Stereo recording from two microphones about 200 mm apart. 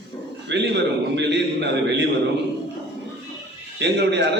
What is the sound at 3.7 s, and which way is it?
Speech, 60° right (ahead or behind).